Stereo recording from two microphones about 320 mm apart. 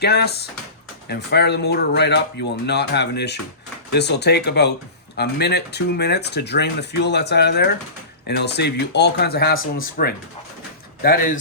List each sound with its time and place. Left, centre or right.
0.0 s speech: left